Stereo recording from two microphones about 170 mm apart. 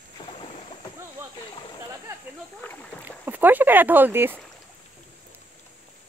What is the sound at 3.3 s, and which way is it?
Speech, 10° right (ahead or behind).